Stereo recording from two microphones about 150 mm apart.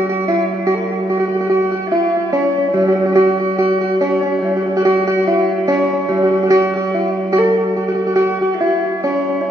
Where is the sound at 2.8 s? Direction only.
20° right (ahead or behind).